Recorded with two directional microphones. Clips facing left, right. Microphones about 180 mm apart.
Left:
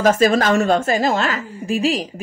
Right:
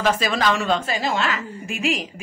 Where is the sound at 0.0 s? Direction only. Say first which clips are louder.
Left 6 dB; 45° left (ahead or behind).